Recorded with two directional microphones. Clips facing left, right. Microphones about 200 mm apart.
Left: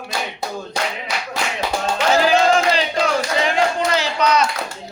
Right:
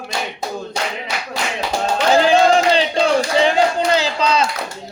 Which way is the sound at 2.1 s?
30° right (ahead or behind).